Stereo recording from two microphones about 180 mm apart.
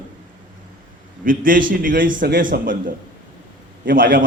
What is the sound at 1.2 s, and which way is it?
A man's voice, 50° right (ahead or behind).